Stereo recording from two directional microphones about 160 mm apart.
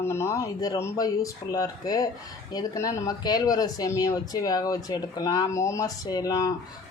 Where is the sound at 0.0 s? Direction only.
15° left (ahead or behind).